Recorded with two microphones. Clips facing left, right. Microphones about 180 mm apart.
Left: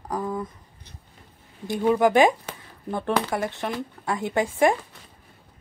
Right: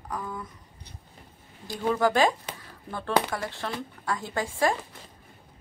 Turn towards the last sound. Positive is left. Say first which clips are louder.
# left 6 dB
turn(degrees=20)  # may be behind; listen again after turning